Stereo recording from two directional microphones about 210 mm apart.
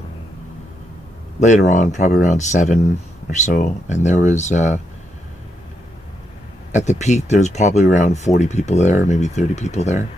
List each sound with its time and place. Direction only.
1.4 s speech: 35° left (ahead or behind)
6.7 s speech: 35° left (ahead or behind)